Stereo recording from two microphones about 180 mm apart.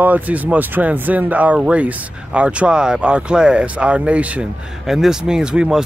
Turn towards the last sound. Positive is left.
turn(degrees=-5)  # may be behind; listen again after turning